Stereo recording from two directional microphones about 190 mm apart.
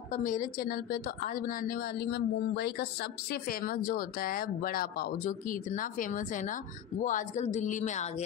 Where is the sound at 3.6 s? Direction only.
50° left (ahead or behind).